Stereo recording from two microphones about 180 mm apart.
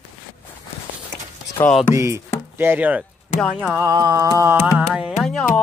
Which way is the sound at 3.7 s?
20° right (ahead or behind).